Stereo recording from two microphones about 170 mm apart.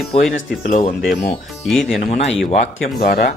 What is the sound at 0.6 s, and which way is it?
Speech, 40° left (ahead or behind).